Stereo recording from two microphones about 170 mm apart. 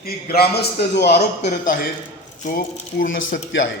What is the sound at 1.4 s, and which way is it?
Speech, 50° left (ahead or behind).